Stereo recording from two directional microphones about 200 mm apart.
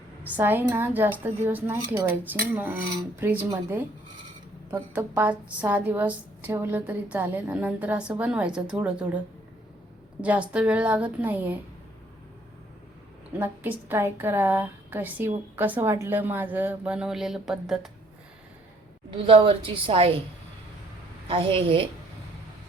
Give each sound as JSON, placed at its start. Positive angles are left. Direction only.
{"t": 0.2, "sound": "a woman's voice", "side_deg": -10}
{"t": 4.9, "sound": "a woman's voice", "side_deg": -10}
{"t": 13.4, "sound": "a woman's voice", "side_deg": -10}
{"t": 19.1, "sound": "a woman's voice", "side_deg": -25}
{"t": 21.2, "sound": "a woman's voice", "side_deg": -25}